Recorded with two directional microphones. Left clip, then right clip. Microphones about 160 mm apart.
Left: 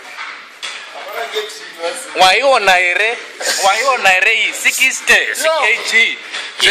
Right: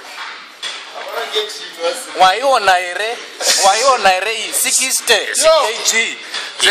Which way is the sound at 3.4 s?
10° left (ahead or behind).